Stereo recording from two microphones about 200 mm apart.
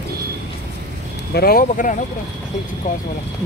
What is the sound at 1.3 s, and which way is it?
Speech, 45° left (ahead or behind).